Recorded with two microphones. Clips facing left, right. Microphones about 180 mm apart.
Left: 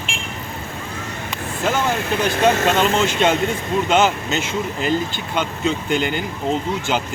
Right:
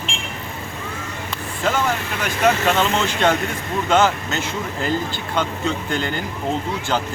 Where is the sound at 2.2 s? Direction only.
25° left (ahead or behind).